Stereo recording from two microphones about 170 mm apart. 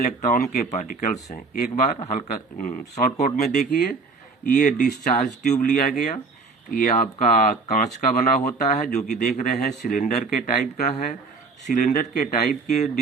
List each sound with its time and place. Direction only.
0.0 s speech: 45° left (ahead or behind)